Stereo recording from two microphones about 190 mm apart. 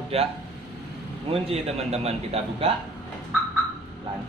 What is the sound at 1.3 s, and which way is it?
A man's voice, 30° right (ahead or behind).